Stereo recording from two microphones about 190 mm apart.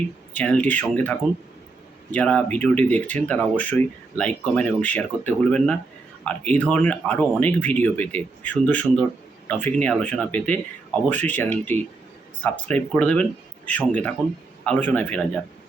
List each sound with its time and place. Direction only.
0.3 s speech: 5° left (ahead or behind)
2.1 s speech: 5° left (ahead or behind)